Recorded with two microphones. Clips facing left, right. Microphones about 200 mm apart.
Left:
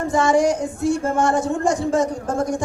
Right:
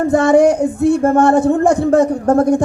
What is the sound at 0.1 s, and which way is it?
Speech, 60° right (ahead or behind).